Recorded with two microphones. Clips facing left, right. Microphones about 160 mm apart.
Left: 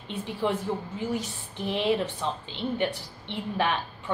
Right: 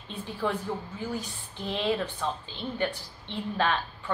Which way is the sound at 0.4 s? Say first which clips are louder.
Left 2 dB; 20° left (ahead or behind).